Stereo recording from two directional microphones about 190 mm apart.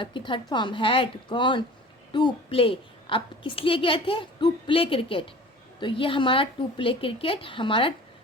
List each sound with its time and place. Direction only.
0.0 s a woman's voice: 25° left (ahead or behind)